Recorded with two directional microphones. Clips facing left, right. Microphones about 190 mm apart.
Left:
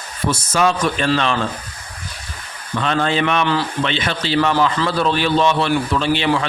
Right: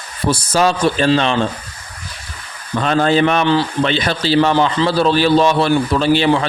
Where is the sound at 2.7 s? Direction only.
40° right (ahead or behind).